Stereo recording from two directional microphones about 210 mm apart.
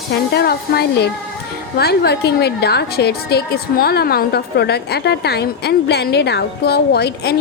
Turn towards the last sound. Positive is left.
turn(degrees=50)  # may be behind; listen again after turning